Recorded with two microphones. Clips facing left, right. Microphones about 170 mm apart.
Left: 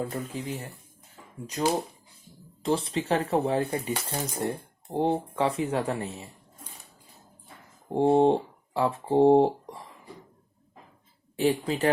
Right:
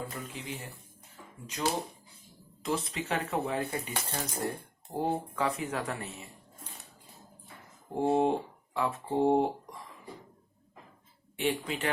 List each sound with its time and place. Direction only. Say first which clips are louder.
0.3 s speech: left 6 dB; 40° left (ahead or behind)
7.9 s speech: left 6 dB; 30° left (ahead or behind)
11.3 s speech: left 7 dB; 35° left (ahead or behind)